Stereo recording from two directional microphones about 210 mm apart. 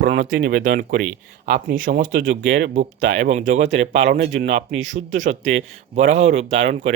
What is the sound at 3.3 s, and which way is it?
Speech, 35° right (ahead or behind).